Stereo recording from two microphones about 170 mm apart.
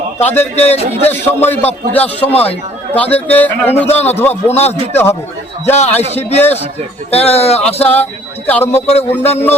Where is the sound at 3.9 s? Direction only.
40° left (ahead or behind).